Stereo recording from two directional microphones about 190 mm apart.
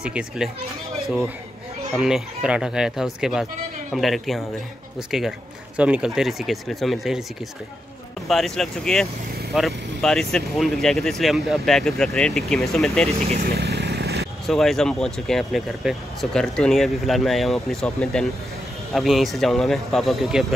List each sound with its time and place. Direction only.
0.0 s speech: 5° right (ahead or behind)
2.0 s speech: 5° right (ahead or behind)
8.3 s speech: centre (ahead or behind)
13.4 s vehicle: 60° right (ahead or behind)
14.4 s speech: centre (ahead or behind)